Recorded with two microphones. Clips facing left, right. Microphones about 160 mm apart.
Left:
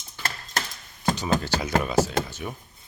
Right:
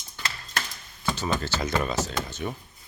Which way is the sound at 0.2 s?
50° left (ahead or behind).